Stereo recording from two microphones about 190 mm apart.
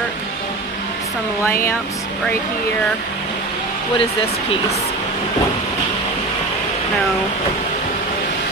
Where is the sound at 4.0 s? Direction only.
30° left (ahead or behind).